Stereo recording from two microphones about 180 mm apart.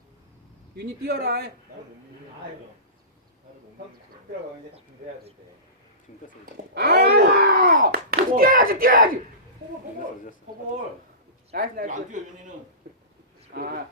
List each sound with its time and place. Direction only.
0.8 s speech: 60° right (ahead or behind)
6.4 s speech: 60° right (ahead or behind)
11.5 s speech: 55° right (ahead or behind)
13.5 s speech: 60° right (ahead or behind)